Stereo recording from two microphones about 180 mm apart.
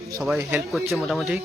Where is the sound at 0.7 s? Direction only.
Centre (ahead or behind).